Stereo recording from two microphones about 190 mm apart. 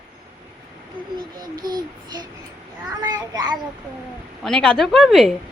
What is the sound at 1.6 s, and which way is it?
Child singing, 20° right (ahead or behind).